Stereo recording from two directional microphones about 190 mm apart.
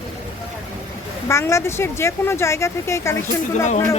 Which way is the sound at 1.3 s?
15° left (ahead or behind).